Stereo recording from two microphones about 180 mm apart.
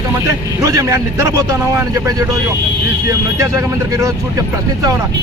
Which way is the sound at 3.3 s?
15° right (ahead or behind).